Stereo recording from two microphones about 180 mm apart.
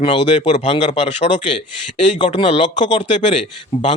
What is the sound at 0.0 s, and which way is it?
Speech, 35° left (ahead or behind).